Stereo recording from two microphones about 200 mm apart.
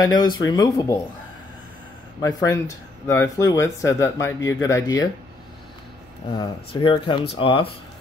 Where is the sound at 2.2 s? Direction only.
15° left (ahead or behind).